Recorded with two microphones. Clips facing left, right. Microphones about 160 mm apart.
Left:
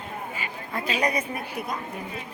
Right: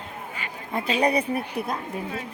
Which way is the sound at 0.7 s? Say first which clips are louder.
Right 4 dB; 30° right (ahead or behind).